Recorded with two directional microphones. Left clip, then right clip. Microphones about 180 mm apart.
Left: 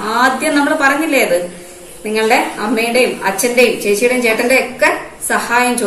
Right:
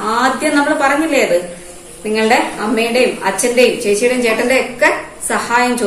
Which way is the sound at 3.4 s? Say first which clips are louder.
Even; 15° right (ahead or behind).